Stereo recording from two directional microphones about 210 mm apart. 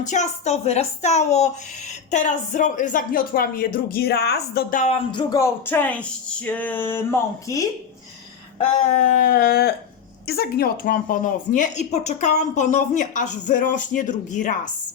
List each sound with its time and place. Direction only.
0.0 s a woman's voice: 35° left (ahead or behind)
5.3 s speech: 10° left (ahead or behind)
8.5 s a sound: 35° left (ahead or behind)
10.2 s a woman's voice: 50° left (ahead or behind)